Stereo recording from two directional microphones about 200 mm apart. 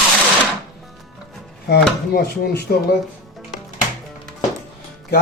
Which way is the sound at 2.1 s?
50° left (ahead or behind).